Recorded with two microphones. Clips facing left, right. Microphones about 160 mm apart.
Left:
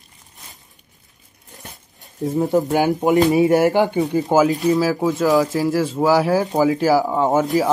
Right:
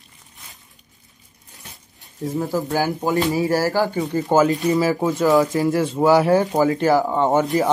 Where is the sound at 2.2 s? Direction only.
25° left (ahead or behind); by 7.7 s centre (ahead or behind).